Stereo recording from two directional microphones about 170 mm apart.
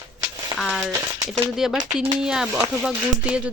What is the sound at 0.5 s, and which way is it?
Speech, centre (ahead or behind).